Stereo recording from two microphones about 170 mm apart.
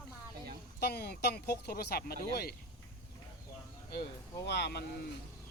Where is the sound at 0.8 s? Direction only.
70° left (ahead or behind).